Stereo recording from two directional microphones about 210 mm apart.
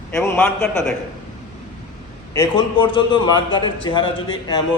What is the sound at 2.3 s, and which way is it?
A man's voice, 20° left (ahead or behind).